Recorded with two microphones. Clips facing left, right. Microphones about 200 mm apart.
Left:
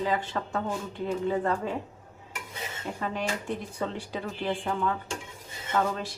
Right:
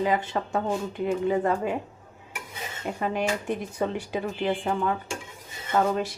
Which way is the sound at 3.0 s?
15° right (ahead or behind).